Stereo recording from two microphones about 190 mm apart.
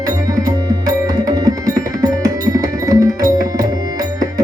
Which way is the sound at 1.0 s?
20° right (ahead or behind).